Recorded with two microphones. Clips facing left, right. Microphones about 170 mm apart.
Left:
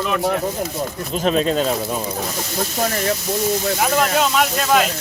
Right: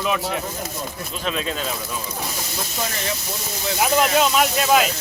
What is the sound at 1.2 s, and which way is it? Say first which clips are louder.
Speech: left 8 dB; 40° left (ahead or behind).